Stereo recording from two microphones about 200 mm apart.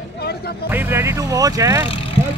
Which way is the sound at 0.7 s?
15° right (ahead or behind).